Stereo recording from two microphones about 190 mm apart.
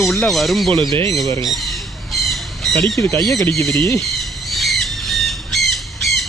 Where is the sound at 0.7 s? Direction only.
25° right (ahead or behind).